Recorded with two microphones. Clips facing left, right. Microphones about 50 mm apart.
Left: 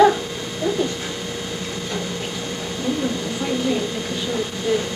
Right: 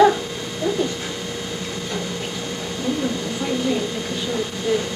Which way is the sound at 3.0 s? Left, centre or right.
Centre.